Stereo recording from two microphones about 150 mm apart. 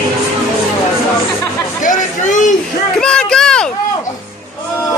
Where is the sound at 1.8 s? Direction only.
55° left (ahead or behind).